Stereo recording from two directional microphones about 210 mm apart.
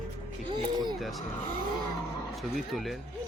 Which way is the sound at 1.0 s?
Centre (ahead or behind).